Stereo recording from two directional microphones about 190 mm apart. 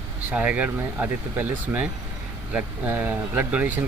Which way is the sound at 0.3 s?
10° right (ahead or behind).